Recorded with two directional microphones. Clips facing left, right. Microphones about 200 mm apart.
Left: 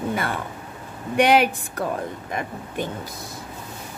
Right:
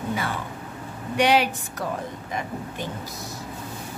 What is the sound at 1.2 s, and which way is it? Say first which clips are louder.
A woman's voice: left 3 dB; 55° left (ahead or behind).